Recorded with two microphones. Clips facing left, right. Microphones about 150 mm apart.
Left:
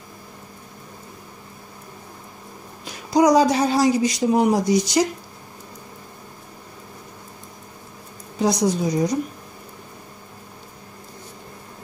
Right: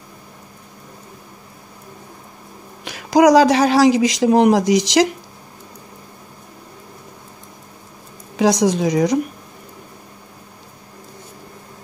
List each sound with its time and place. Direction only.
2.8 s speech: 85° right
8.4 s speech: 90° right